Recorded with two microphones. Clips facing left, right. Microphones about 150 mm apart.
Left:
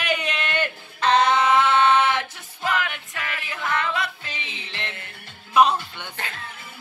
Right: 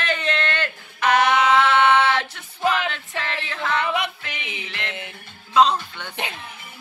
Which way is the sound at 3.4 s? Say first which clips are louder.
Right 2 dB; 10° left (ahead or behind).